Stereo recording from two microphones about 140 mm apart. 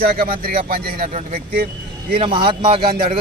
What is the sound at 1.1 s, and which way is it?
Speech, 70° right (ahead or behind).